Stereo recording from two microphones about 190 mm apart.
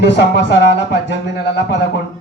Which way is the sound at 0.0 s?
65° left (ahead or behind).